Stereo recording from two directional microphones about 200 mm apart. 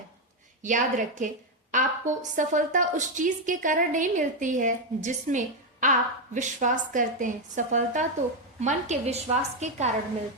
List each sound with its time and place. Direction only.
0.6 s a woman's voice: 40° right (ahead or behind)